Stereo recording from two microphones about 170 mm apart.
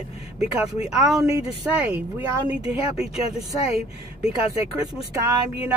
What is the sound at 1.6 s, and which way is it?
Speech, 10° right (ahead or behind).